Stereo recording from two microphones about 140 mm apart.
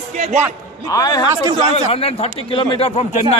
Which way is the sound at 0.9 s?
25° left (ahead or behind).